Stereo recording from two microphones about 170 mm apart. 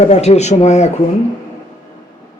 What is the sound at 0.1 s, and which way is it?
Speech, 40° left (ahead or behind).